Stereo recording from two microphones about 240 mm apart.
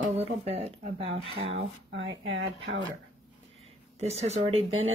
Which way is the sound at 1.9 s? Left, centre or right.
Right.